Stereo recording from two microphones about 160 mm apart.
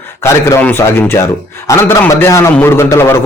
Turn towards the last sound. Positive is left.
turn(degrees=15)  # may be behind; listen again after turning